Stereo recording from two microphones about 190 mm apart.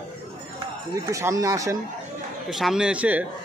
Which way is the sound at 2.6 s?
5° right (ahead or behind).